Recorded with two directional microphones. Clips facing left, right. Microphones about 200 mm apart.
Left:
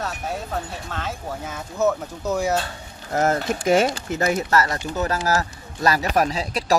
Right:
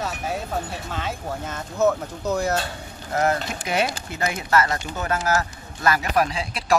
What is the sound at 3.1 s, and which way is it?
Speech, 45° left (ahead or behind).